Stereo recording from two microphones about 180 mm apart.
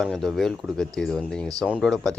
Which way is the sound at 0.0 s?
Centre (ahead or behind).